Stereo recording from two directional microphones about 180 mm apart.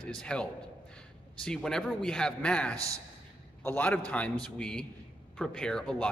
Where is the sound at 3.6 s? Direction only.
10° left (ahead or behind).